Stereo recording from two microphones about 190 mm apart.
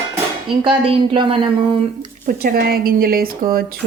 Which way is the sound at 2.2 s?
50° right (ahead or behind).